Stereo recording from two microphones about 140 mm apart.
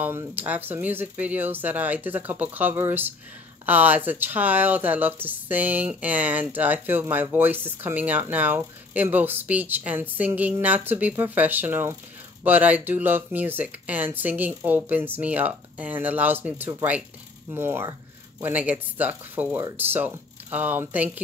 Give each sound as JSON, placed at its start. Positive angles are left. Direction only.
{"t": 0.0, "sound": "speech", "side_deg": -15}